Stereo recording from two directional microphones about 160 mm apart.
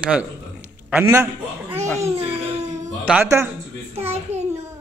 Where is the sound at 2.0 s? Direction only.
40° right (ahead or behind).